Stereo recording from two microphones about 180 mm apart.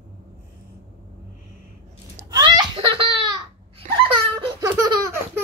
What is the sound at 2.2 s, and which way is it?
Laughter, 20° right (ahead or behind).